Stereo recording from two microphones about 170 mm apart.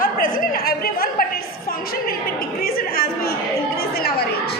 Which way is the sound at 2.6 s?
60° left (ahead or behind).